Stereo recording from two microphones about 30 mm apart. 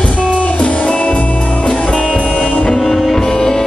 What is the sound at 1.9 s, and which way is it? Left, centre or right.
Music, left.